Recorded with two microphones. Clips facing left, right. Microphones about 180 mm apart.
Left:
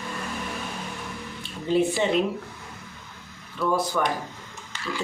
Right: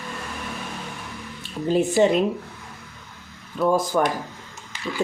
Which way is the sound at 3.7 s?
45° right (ahead or behind).